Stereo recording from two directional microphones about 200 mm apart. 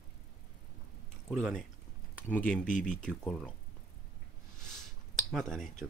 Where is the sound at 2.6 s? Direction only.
40° left (ahead or behind).